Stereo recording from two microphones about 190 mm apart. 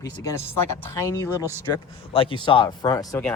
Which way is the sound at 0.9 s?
15° left (ahead or behind).